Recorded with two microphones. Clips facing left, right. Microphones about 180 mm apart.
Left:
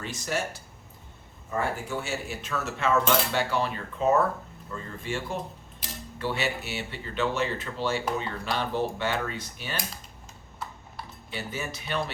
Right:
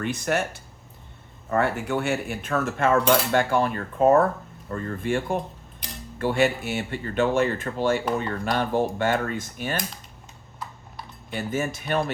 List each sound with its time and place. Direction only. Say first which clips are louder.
0.0 s speech: right 6 dB; 60° right (ahead or behind)
1.5 s cutlery: right 6 dB; 70° right (ahead or behind); by 9.8 s 50° right (ahead or behind)
11.3 s cutlery: right 8 dB; 50° right (ahead or behind)